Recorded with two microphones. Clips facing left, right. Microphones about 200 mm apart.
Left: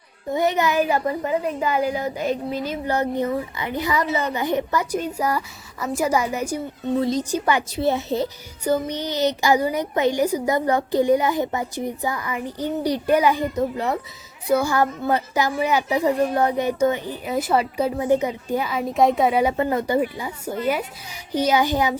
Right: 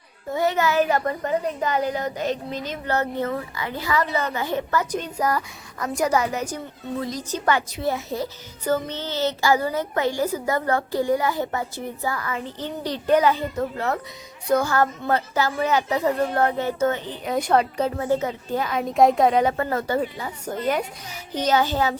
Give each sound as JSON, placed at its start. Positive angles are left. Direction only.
{"t": 0.3, "sound": "a woman's voice", "side_deg": 20}
{"t": 7.0, "sound": "a woman's voice", "side_deg": 25}
{"t": 7.3, "sound": "speech", "side_deg": 10}
{"t": 7.7, "sound": "a woman's voice", "side_deg": 30}
{"t": 8.6, "sound": "speech", "side_deg": 15}